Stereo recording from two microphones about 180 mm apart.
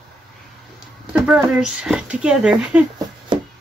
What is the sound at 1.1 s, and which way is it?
Speech, 5° right (ahead or behind).